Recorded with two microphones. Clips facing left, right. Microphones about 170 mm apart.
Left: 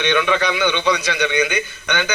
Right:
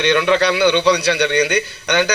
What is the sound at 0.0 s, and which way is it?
A man's voice, 70° right (ahead or behind).